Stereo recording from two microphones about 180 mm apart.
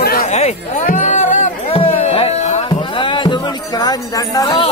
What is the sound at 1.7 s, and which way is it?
Music, 30° left (ahead or behind).